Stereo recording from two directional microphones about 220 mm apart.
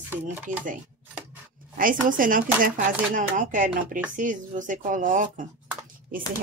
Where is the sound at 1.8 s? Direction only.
40° right (ahead or behind).